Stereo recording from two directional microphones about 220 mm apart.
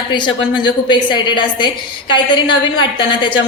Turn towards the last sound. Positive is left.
turn(degrees=20)  # may be behind; listen again after turning